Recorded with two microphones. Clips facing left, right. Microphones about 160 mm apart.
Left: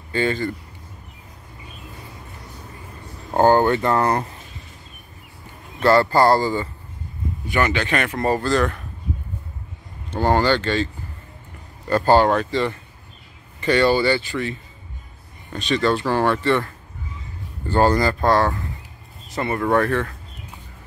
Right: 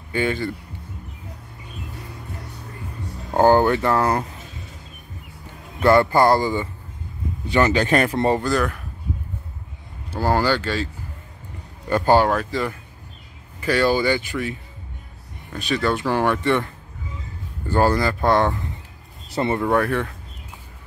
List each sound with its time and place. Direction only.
0.1 s speech: 10° right (ahead or behind)
3.3 s speech: 10° right (ahead or behind)
5.8 s speech: 15° right (ahead or behind)
7.4 s speech: 25° right (ahead or behind)
7.7 s speech: 40° right (ahead or behind)
8.4 s speech: 10° right (ahead or behind)
10.1 s speech: 5° right (ahead or behind)
11.9 s speech: 15° right (ahead or behind)
18.2 s speech: 20° right (ahead or behind)
19.6 s speech: 10° right (ahead or behind)